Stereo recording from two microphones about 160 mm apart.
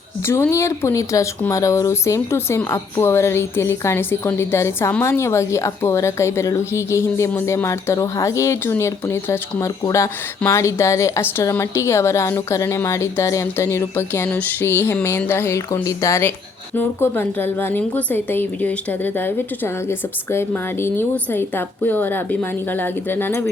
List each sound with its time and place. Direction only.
0.3 s speech: 15° left (ahead or behind)